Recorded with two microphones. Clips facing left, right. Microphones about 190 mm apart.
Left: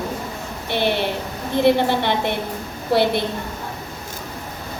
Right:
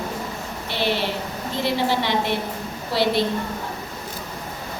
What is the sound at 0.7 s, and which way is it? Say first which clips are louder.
A woman's voice: left 3 dB; 55° left (ahead or behind).